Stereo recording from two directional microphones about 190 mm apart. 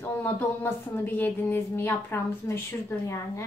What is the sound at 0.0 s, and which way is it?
Speech, 10° left (ahead or behind).